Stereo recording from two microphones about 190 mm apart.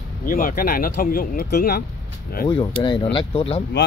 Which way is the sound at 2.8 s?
25° left (ahead or behind).